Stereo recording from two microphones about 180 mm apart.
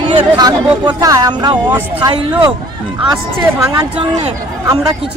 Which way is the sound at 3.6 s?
20° right (ahead or behind).